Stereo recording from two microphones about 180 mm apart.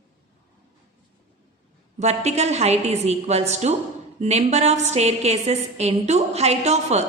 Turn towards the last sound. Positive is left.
turn(degrees=-40)  # may be behind; listen again after turning